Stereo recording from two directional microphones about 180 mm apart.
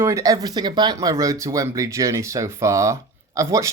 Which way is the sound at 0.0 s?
20° right (ahead or behind).